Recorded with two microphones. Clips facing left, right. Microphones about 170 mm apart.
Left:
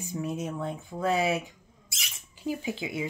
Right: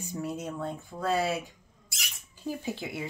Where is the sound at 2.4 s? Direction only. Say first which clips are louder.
Left 2 dB; 10° left (ahead or behind).